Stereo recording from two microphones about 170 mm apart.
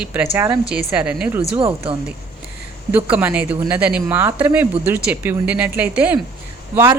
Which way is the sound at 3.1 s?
10° right (ahead or behind).